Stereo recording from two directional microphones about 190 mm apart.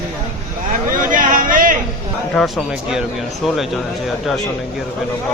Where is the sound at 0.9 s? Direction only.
45° right (ahead or behind).